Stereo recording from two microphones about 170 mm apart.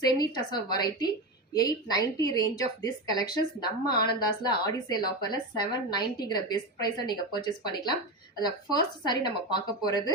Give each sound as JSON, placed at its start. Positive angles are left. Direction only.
{"t": 0.0, "sound": "a woman's voice", "side_deg": 25}
{"t": 9.0, "sound": "a woman's voice", "side_deg": 25}